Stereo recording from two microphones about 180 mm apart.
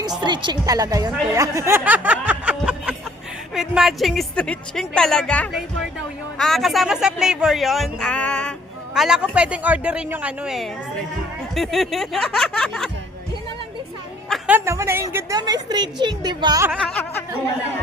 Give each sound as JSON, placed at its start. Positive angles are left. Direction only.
{"t": 0.0, "sound": "a woman's voice", "side_deg": -25}
{"t": 1.3, "sound": "music", "side_deg": -15}
{"t": 3.5, "sound": "a man's voice", "side_deg": 0}
{"t": 14.3, "sound": "a woman's voice", "side_deg": -5}
{"t": 16.9, "sound": "speech", "side_deg": 10}